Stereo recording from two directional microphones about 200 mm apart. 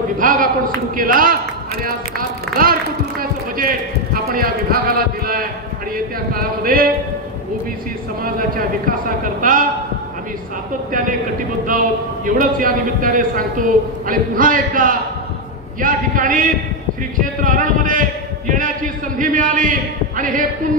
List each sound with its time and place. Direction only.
0.2 s a sound: 40° right (ahead or behind)
0.9 s a man's voice: 45° right (ahead or behind)
8.2 s a man's voice: 45° right (ahead or behind)
10.9 s a man's voice: 45° right (ahead or behind)
19.1 s a man's voice: 40° right (ahead or behind)